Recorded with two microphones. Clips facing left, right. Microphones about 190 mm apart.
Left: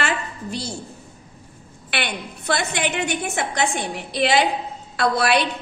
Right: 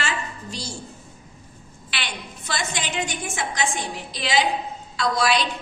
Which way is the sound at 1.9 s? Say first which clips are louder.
Left 7 dB; 60° left (ahead or behind).